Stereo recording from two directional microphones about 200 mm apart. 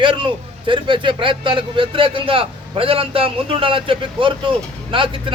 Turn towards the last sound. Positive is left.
turn(degrees=-25)  # may be behind; listen again after turning